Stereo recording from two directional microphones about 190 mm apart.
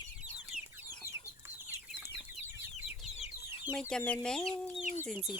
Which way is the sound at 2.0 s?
10° right (ahead or behind).